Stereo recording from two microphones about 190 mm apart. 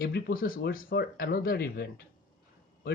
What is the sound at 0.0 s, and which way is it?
Speech, 50° left (ahead or behind).